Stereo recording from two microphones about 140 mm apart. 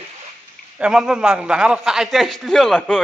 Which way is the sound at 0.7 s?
5° right (ahead or behind).